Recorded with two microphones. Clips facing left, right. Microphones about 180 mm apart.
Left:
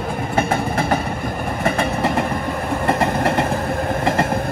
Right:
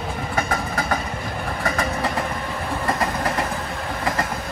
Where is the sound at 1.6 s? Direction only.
25° left (ahead or behind).